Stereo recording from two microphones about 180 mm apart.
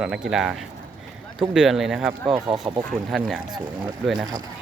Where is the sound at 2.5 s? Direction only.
30° right (ahead or behind).